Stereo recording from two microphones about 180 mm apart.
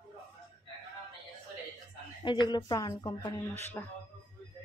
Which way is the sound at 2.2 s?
25° left (ahead or behind).